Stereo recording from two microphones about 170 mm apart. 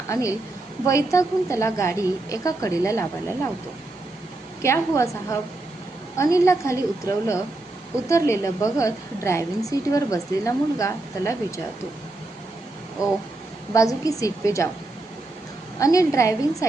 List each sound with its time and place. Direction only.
0.1 s a woman's voice: 20° left (ahead or behind)
4.6 s a woman's voice: 15° left (ahead or behind)
13.0 s a woman's voice: 20° left (ahead or behind)
15.8 s a woman's voice: 20° left (ahead or behind)